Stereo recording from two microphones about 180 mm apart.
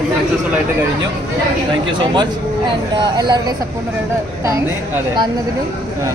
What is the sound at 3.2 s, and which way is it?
Speech, 20° right (ahead or behind).